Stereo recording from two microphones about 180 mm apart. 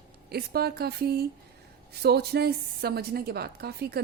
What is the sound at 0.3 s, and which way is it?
A woman's voice, 60° right (ahead or behind).